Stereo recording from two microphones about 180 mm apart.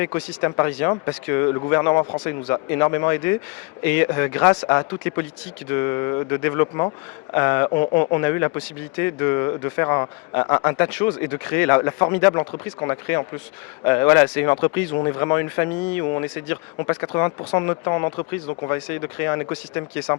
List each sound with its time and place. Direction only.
0.0 s speech: 15° left (ahead or behind)